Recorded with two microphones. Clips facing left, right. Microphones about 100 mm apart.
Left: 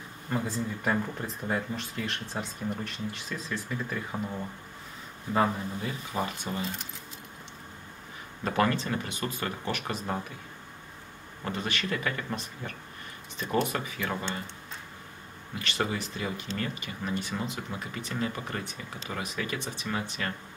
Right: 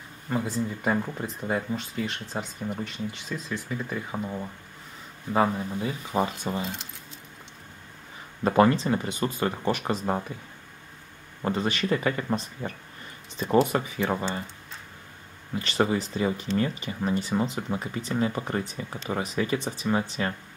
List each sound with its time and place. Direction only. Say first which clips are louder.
0.8 s speech: right 1 dB; 10° right (ahead or behind)
6.1 s speech: right 6 dB; 30° right (ahead or behind)
8.5 s speech: right 7 dB; 25° right (ahead or behind)
11.4 s speech: right 6 dB; 30° right (ahead or behind)
15.5 s speech: right 6 dB; 35° right (ahead or behind)